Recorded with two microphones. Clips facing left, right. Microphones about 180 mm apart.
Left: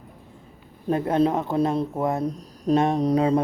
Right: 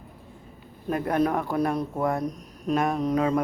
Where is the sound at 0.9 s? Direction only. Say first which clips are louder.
Left 3 dB; 25° left (ahead or behind).